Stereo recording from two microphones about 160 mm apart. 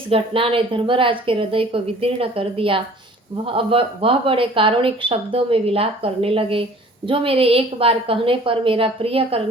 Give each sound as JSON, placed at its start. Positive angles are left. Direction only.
{"t": 0.1, "sound": "speech", "side_deg": -35}